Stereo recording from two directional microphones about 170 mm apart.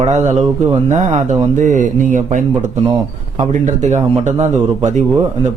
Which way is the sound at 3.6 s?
45° right (ahead or behind).